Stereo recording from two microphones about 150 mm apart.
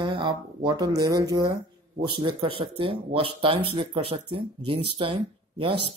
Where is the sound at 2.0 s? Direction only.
35° right (ahead or behind).